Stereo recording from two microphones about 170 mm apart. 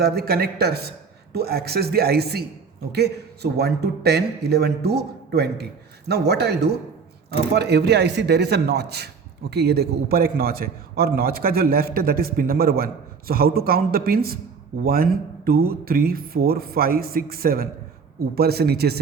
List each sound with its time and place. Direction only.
0.0 s a man's voice: 65° right (ahead or behind)